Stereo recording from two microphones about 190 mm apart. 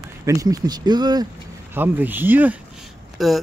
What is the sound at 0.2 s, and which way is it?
Speech, 15° right (ahead or behind).